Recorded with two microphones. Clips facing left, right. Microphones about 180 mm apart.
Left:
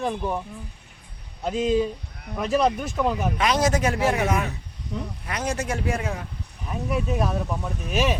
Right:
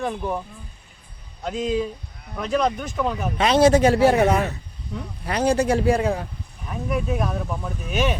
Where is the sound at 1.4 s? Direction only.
5° left (ahead or behind).